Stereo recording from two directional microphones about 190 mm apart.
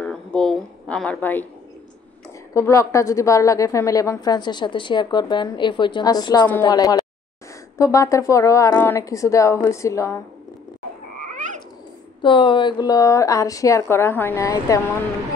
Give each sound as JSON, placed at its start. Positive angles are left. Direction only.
{"t": 0.0, "sound": "a sound", "side_deg": 5}
{"t": 2.5, "sound": "a woman's voice", "side_deg": 15}
{"t": 11.1, "sound": "frog", "side_deg": -40}
{"t": 12.2, "sound": "a woman's voice", "side_deg": 25}